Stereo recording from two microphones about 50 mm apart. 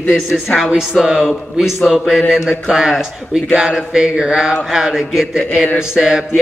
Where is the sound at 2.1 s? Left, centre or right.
Centre.